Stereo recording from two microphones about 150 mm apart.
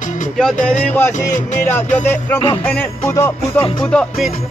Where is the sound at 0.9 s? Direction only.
15° left (ahead or behind).